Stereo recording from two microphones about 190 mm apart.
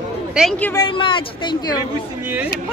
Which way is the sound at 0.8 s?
25° left (ahead or behind).